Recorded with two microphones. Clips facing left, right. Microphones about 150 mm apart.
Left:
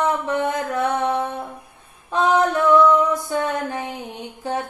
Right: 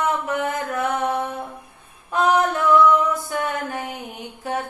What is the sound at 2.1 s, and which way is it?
Female singing, 25° left (ahead or behind).